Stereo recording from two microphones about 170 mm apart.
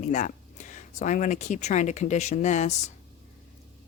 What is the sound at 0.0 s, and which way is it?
Speech, 50° left (ahead or behind).